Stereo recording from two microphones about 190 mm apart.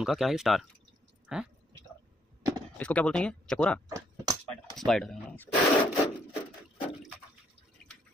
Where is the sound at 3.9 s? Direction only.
20° right (ahead or behind).